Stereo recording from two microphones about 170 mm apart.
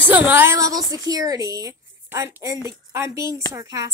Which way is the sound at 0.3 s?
15° right (ahead or behind).